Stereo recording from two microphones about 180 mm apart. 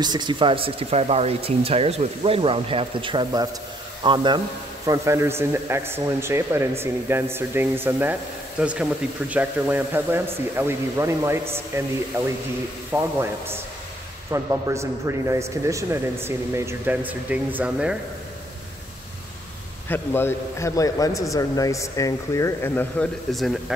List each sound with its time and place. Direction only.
0.0 s a man's voice: 25° right (ahead or behind)
12.9 s a man's voice: 15° right (ahead or behind)
19.9 s a man's voice: 10° left (ahead or behind)
23.3 s speech: centre (ahead or behind)